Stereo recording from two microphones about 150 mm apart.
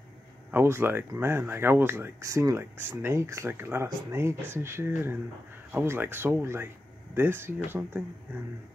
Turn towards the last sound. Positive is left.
turn(degrees=-15)  # may be behind; listen again after turning